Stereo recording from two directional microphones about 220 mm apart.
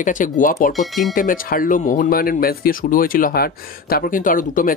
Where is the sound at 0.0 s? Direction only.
35° left (ahead or behind).